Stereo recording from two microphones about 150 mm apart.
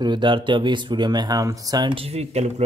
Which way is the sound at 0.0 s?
30° right (ahead or behind).